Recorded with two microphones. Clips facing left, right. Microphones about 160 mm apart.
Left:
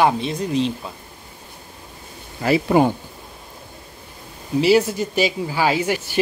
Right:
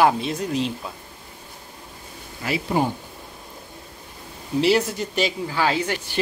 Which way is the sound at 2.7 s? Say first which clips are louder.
Left 6 dB; 80° left.